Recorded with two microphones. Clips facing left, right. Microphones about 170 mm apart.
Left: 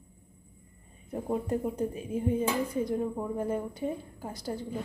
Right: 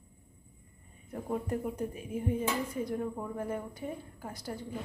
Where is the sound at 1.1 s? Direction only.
20° left (ahead or behind).